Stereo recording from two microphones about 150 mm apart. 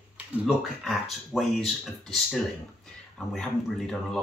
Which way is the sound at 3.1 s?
5° left (ahead or behind).